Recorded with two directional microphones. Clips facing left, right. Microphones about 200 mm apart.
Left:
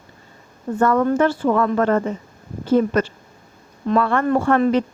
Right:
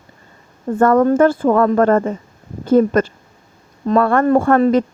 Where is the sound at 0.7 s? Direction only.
50° right (ahead or behind).